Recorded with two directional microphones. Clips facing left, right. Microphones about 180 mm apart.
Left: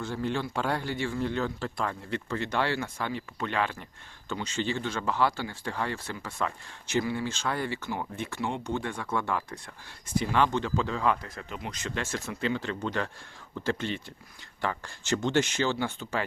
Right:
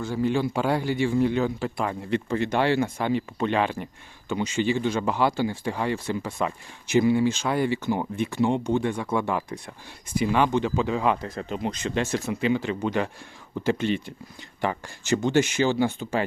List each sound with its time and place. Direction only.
0.0 s a man's voice: 5° right (ahead or behind)